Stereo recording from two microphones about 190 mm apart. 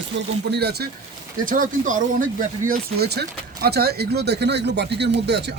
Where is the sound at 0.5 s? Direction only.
55° right (ahead or behind).